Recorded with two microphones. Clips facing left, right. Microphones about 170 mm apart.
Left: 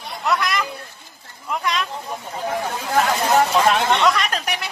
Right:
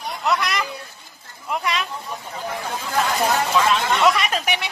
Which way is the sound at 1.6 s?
Centre (ahead or behind).